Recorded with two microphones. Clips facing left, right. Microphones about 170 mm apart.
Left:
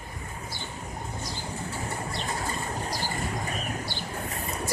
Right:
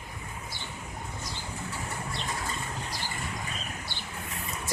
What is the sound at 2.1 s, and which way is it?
Vehicle, 40° left (ahead or behind).